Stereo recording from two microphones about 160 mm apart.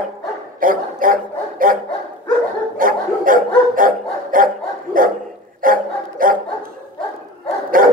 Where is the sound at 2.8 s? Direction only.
60° right (ahead or behind).